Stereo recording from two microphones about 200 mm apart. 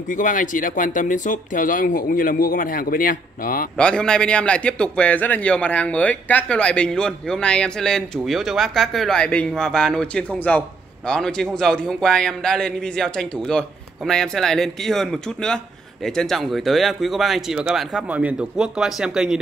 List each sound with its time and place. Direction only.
0.1 s speech: 40° left (ahead or behind)
3.7 s a man's voice: 5° left (ahead or behind)